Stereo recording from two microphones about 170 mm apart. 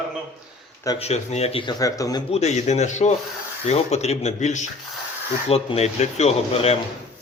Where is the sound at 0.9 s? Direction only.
40° left (ahead or behind).